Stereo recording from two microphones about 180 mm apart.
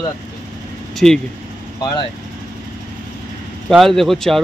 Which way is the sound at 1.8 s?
25° left (ahead or behind).